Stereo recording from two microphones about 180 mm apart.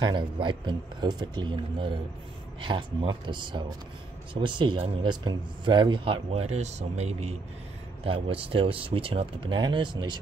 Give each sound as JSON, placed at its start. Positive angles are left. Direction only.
{"t": 0.0, "sound": "speech", "side_deg": -25}